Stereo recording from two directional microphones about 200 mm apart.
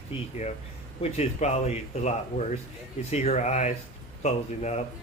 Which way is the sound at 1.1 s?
35° left (ahead or behind).